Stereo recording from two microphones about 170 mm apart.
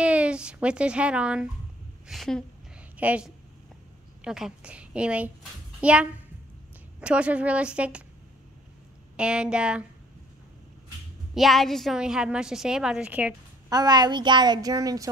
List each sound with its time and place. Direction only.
0.0 s a sound: 5° right (ahead or behind)
2.0 s a woman's voice: centre (ahead or behind)
3.0 s a woman's voice: 10° right (ahead or behind)
9.1 s a woman's voice: 5° right (ahead or behind)
11.3 s a woman's voice: centre (ahead or behind)
13.7 s a woman's voice: 25° right (ahead or behind)